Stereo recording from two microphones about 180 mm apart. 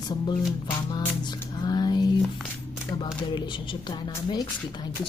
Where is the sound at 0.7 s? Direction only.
20° left (ahead or behind).